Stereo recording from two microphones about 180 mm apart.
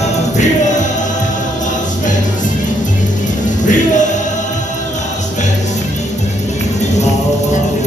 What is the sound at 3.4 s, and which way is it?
Music, 45° left (ahead or behind).